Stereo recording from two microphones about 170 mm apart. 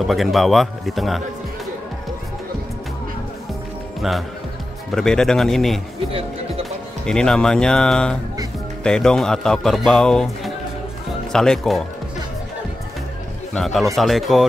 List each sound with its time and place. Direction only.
0.1 s speech: centre (ahead or behind)
4.9 s speech: 5° left (ahead or behind)
5.9 s music: 35° right (ahead or behind)
6.6 s speech: 5° left (ahead or behind)
13.6 s speech: centre (ahead or behind)